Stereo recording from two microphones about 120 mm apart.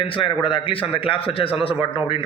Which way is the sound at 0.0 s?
45° left (ahead or behind).